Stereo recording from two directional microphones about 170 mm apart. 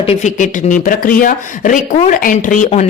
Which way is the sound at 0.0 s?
40° left (ahead or behind).